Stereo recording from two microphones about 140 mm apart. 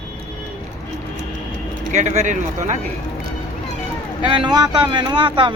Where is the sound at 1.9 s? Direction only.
60° right (ahead or behind).